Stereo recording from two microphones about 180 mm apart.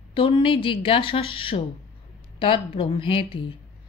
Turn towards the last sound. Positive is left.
turn(degrees=30)  # may be behind; listen again after turning